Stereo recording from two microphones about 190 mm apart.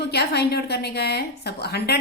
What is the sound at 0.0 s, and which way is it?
A woman's voice, 60° left (ahead or behind).